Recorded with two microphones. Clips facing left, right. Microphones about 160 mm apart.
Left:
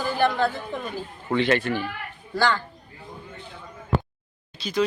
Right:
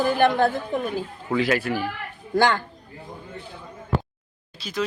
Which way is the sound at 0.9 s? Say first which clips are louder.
Right 1 dB; 5° right (ahead or behind).